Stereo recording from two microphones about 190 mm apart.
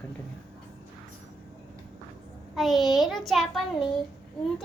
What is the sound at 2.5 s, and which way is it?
A child's voice, centre (ahead or behind).